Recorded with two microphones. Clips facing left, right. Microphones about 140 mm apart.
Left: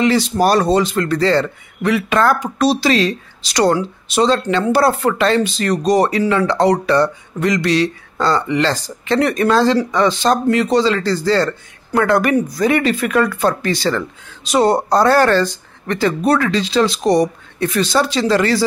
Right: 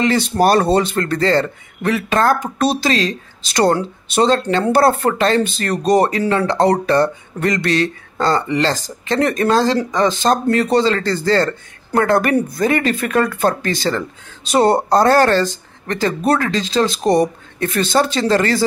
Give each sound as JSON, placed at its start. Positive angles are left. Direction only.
{"t": 0.0, "sound": "a man's voice", "side_deg": -50}